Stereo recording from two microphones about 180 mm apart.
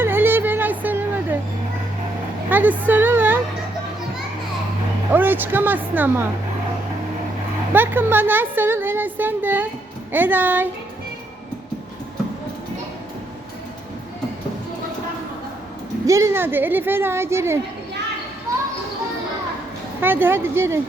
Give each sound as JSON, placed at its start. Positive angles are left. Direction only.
{"t": 0.0, "sound": "a sound", "side_deg": -10}
{"t": 2.5, "sound": "music", "side_deg": -10}
{"t": 5.1, "sound": "a woman's voice", "side_deg": -10}
{"t": 7.7, "sound": "a woman's voice", "side_deg": -10}
{"t": 16.0, "sound": "a woman's voice", "side_deg": -15}
{"t": 20.0, "sound": "a woman's voice", "side_deg": -10}